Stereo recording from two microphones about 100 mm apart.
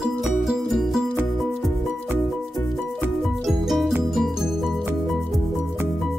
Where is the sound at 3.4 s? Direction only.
Centre (ahead or behind).